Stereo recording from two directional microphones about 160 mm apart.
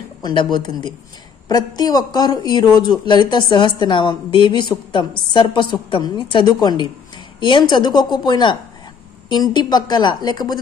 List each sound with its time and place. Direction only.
0.2 s a woman's voice: 30° left (ahead or behind)